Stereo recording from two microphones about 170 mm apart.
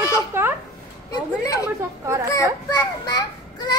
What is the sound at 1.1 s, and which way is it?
A woman's voice, 20° left (ahead or behind).